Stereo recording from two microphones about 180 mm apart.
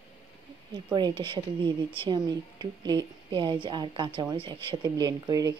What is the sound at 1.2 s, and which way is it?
A woman's voice, 25° right (ahead or behind).